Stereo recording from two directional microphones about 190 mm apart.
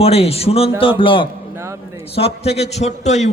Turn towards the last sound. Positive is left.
turn(degrees=35)  # may be behind; listen again after turning